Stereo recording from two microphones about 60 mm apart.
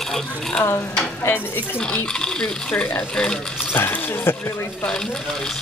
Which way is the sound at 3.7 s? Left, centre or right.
Left.